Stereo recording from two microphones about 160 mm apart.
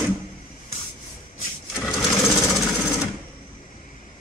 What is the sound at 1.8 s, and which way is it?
Sewing machine, centre (ahead or behind).